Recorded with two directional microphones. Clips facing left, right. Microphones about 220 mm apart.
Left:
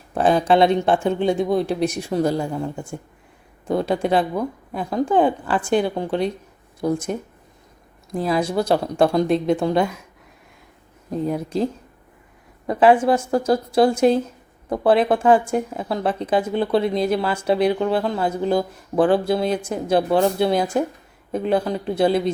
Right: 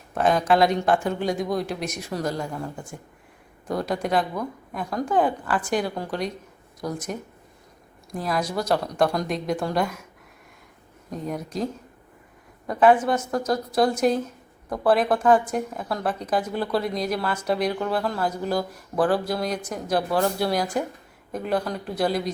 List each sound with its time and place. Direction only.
0.1 s a woman's voice: 30° left (ahead or behind)
11.1 s a woman's voice: 30° left (ahead or behind)